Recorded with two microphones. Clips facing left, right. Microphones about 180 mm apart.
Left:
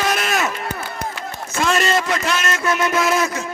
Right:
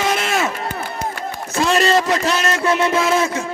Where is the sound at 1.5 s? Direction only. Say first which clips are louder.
Right 3 dB; 35° right (ahead or behind).